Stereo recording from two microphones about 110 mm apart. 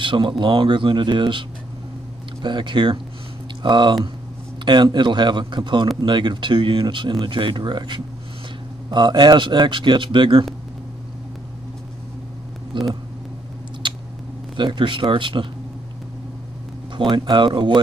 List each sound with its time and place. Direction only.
0.0 s speech: 45° right (ahead or behind)
2.4 s speech: 45° right (ahead or behind)
12.7 s speech: 45° right (ahead or behind)
14.6 s speech: 45° right (ahead or behind)
16.9 s speech: 45° right (ahead or behind)